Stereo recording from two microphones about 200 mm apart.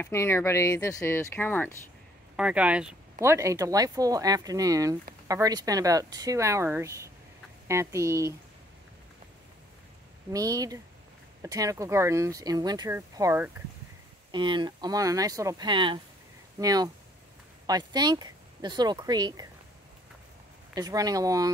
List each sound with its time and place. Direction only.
0.0 s speech: 15° left (ahead or behind)
2.3 s speech: 5° right (ahead or behind)
10.3 s speech: 15° right (ahead or behind)
20.7 s speech: 20° right (ahead or behind)